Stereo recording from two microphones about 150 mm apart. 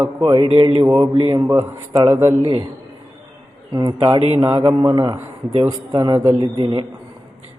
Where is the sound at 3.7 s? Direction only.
25° right (ahead or behind).